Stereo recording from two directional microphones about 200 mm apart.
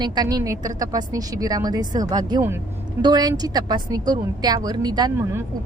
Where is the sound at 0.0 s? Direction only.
20° right (ahead or behind).